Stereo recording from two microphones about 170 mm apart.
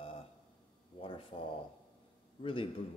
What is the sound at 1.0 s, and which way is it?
A man's voice, 30° left (ahead or behind).